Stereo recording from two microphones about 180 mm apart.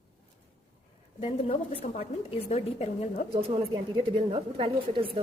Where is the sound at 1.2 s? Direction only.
35° left (ahead or behind).